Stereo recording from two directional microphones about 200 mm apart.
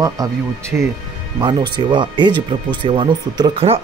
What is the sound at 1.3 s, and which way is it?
Speech, 25° right (ahead or behind).